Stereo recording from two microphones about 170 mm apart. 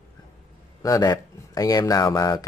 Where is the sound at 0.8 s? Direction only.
20° left (ahead or behind).